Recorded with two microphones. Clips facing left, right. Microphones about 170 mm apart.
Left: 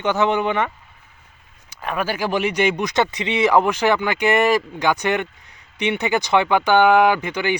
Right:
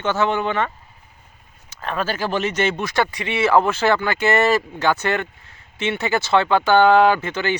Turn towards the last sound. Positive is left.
turn(degrees=15)  # may be behind; listen again after turning